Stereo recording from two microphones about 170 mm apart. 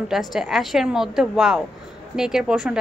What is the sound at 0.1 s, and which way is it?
A woman's voice, centre (ahead or behind).